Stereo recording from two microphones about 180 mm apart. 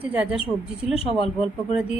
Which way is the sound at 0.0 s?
10° right (ahead or behind).